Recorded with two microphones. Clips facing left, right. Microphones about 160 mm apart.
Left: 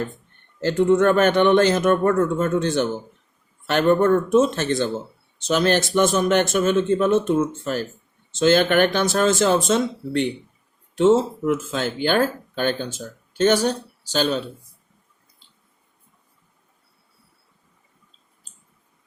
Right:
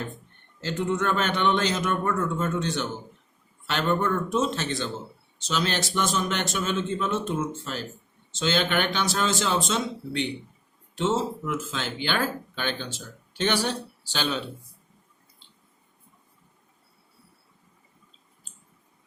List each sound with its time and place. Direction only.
0.6 s speech: 50° left (ahead or behind)